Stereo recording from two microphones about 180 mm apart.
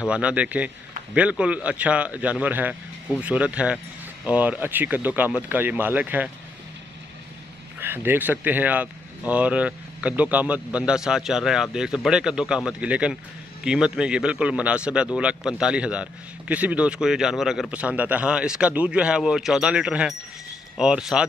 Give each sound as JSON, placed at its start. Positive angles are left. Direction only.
{"t": 0.0, "sound": "speech", "side_deg": -5}
{"t": 7.8, "sound": "a man's voice", "side_deg": -10}